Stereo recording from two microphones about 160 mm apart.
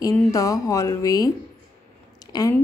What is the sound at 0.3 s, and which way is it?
Speech, 20° left (ahead or behind).